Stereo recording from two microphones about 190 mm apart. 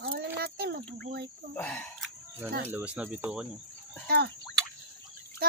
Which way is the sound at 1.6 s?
10° left (ahead or behind).